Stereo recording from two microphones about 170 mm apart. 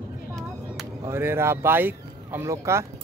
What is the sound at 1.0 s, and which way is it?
Speech, 15° right (ahead or behind).